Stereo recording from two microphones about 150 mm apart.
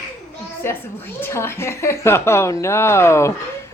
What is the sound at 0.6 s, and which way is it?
A woman's voice, 15° left (ahead or behind).